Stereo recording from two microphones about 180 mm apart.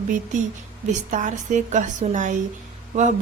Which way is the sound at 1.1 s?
45° right (ahead or behind).